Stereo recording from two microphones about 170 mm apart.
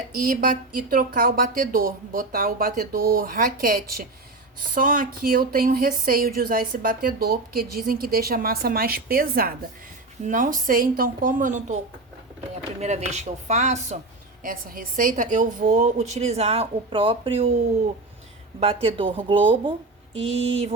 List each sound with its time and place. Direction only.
0.1 s a woman's voice: 55° right (ahead or behind)
12.8 s a woman's voice: 40° right (ahead or behind)
14.4 s a woman's voice: 55° right (ahead or behind); by 17.5 s 30° right (ahead or behind)
18.6 s speech: 35° right (ahead or behind)